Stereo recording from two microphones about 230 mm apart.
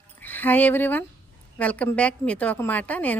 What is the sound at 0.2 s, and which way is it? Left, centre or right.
A woman's voice, centre.